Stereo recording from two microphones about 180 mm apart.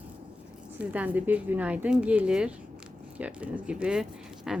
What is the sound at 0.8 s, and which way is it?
A woman's voice, 10° right (ahead or behind).